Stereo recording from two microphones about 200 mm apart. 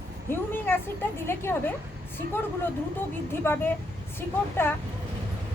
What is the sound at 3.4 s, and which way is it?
Speech, 10° left (ahead or behind).